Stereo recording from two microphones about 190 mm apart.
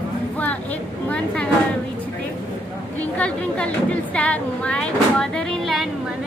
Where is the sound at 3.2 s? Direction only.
5° left (ahead or behind).